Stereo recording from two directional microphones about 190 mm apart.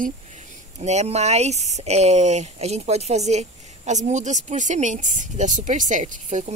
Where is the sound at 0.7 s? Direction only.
35° right (ahead or behind).